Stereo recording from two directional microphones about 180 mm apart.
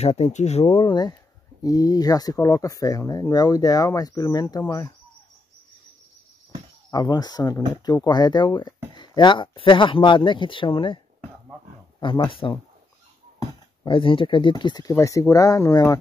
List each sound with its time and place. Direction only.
0.0 s speech: 35° left (ahead or behind); by 4.9 s 20° left (ahead or behind)
6.9 s speech: 20° left (ahead or behind)
12.0 s speech: 25° left (ahead or behind)